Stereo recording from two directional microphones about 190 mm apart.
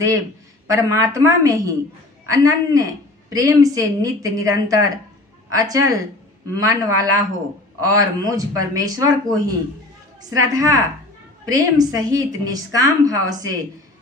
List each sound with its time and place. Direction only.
0.7 s a woman's voice: 15° right (ahead or behind)